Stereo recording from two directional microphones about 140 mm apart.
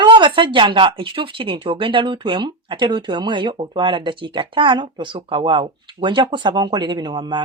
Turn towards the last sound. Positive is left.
turn(degrees=-35)  # may be behind; listen again after turning